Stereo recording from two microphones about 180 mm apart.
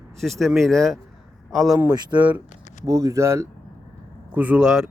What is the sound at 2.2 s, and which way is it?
Speech, 10° right (ahead or behind).